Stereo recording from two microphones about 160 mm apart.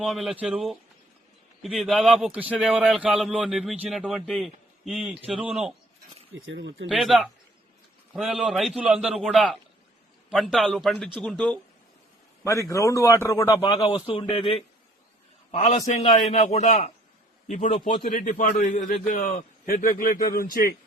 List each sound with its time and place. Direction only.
0.0 s speech: centre (ahead or behind)
6.8 s speech: centre (ahead or behind)
12.5 s a man's voice: 20° left (ahead or behind)
13.9 s a man's voice: 35° left (ahead or behind); by 20.7 s 70° left (ahead or behind)